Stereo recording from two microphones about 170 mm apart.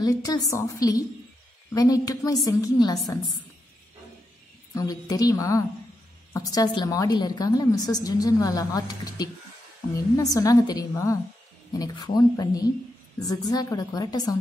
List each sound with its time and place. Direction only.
0.0 s a woman's voice: 20° left (ahead or behind)
4.7 s a woman's voice: 20° left (ahead or behind)